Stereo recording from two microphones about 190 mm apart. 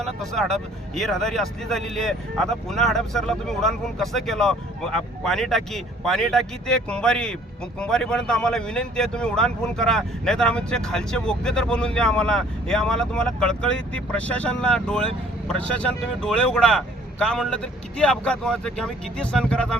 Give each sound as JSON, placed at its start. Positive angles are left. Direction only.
{"t": 0.0, "sound": "speech", "side_deg": 0}